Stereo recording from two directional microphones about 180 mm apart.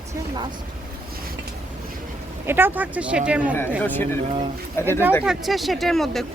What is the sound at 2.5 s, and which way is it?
Speech, 10° right (ahead or behind).